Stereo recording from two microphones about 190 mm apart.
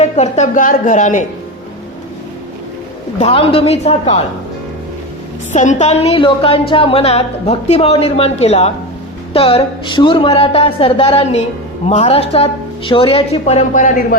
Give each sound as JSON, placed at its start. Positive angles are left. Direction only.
{"t": 0.0, "sound": "a woman's voice", "side_deg": 35}
{"t": 3.2, "sound": "a woman's voice", "side_deg": 30}
{"t": 5.5, "sound": "a woman's voice", "side_deg": 40}